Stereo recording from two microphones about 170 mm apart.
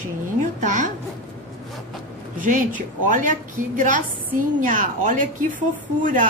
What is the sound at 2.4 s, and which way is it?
Speech, 50° right (ahead or behind).